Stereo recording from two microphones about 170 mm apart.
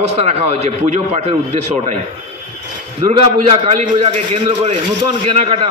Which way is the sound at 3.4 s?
40° right (ahead or behind).